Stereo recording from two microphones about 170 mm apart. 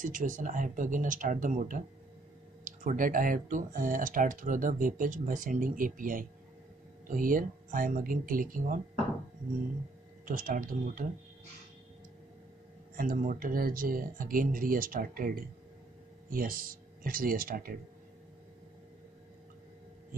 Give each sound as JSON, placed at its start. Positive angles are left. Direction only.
{"t": 0.0, "sound": "speech", "side_deg": -50}
{"t": 10.2, "sound": "speech", "side_deg": -55}
{"t": 12.9, "sound": "speech", "side_deg": -55}